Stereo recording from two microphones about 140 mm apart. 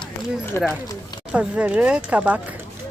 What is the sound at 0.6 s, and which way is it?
Speech, 15° left (ahead or behind).